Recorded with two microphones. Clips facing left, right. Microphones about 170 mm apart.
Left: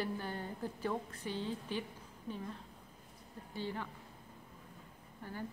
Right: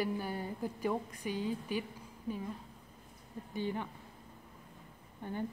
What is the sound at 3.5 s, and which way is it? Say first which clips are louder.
Speech: right 4 dB; 15° right (ahead or behind).